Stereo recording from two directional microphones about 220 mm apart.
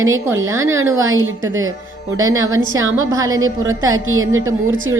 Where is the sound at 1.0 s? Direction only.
65° right (ahead or behind).